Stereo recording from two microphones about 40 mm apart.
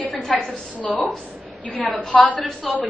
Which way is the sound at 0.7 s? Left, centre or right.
Left.